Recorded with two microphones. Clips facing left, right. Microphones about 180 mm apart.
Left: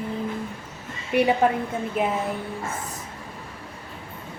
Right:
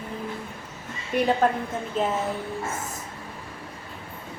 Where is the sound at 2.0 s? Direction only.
10° left (ahead or behind).